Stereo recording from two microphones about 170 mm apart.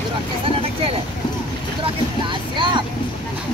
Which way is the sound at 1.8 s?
30° right (ahead or behind).